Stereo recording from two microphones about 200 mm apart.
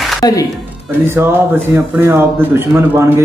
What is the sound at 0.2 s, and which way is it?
Speech, 15° left (ahead or behind).